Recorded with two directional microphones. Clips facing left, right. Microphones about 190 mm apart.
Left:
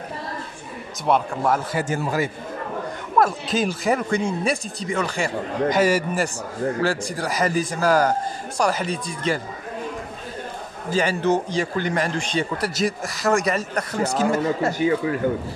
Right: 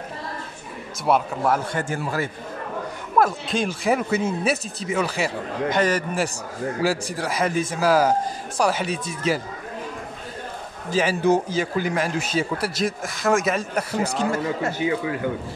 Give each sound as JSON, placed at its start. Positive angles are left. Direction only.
{"t": 1.0, "sound": "a man's voice", "side_deg": -5}
{"t": 1.9, "sound": "a man's voice", "side_deg": 15}
{"t": 3.2, "sound": "a man's voice", "side_deg": 0}
{"t": 6.8, "sound": "a man's voice", "side_deg": -5}
{"t": 10.9, "sound": "a man's voice", "side_deg": -5}
{"t": 14.6, "sound": "speech", "side_deg": 40}